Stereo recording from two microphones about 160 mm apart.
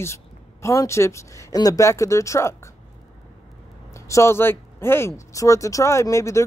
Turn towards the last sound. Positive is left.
turn(degrees=20)  # may be behind; listen again after turning